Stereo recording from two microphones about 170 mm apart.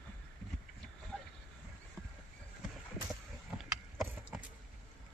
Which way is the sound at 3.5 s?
5° right (ahead or behind).